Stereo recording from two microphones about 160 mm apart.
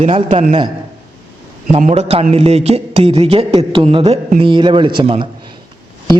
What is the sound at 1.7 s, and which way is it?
A man's voice, 45° right (ahead or behind).